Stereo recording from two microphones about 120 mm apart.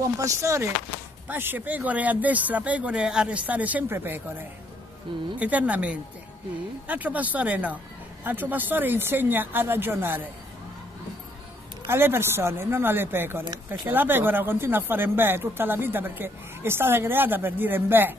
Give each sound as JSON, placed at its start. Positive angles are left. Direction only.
{"t": 0.0, "sound": "speech", "side_deg": -25}
{"t": 11.9, "sound": "speech", "side_deg": -20}